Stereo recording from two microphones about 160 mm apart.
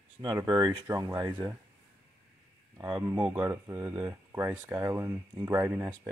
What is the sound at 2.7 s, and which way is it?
Speech, 20° right (ahead or behind).